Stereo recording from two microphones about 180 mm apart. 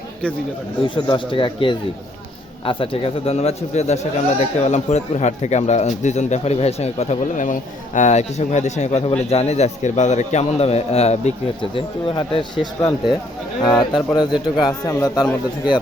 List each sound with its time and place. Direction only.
0.9 s a man's voice: 25° left (ahead or behind)